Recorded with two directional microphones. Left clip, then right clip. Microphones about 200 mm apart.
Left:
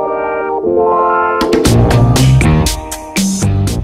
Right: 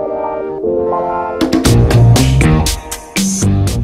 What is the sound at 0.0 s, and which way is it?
Music, 10° left (ahead or behind).